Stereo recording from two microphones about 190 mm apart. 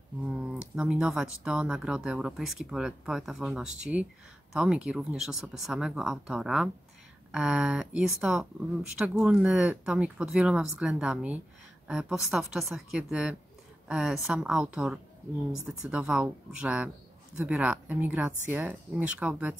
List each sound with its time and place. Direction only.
0.3 s speech: 5° right (ahead or behind)